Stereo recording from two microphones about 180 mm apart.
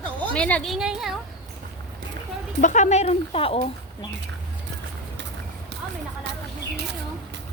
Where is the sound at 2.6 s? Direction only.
45° left (ahead or behind).